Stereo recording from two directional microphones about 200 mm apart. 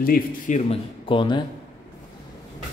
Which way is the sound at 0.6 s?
30° left (ahead or behind).